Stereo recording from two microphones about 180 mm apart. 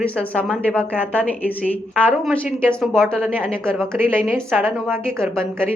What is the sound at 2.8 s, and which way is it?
A woman's voice, centre (ahead or behind).